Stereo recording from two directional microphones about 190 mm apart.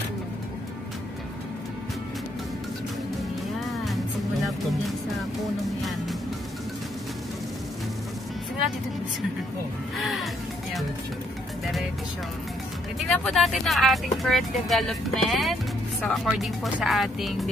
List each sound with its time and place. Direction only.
4.5 s music: centre (ahead or behind)
9.9 s music: centre (ahead or behind)
13.1 s speech: centre (ahead or behind)